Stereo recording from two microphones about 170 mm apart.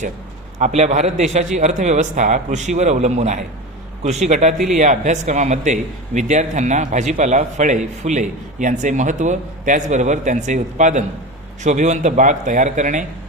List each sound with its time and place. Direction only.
0.6 s a man's voice: 40° right (ahead or behind)